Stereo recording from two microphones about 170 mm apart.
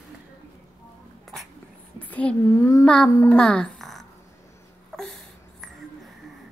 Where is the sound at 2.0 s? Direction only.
10° left (ahead or behind).